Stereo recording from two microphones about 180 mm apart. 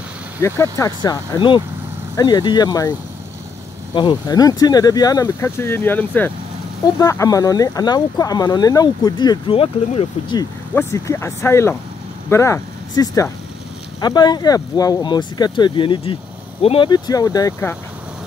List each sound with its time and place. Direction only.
0.4 s speech: 15° left (ahead or behind)
3.9 s speech: 25° left (ahead or behind)
10.7 s speech: 15° left (ahead or behind)